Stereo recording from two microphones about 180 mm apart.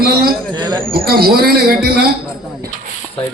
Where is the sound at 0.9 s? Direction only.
55° right (ahead or behind).